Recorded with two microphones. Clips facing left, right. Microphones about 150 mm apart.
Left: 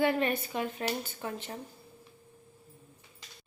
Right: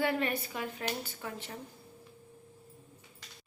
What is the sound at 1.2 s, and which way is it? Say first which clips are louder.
Dishes: left 4 dB; 25° left (ahead or behind).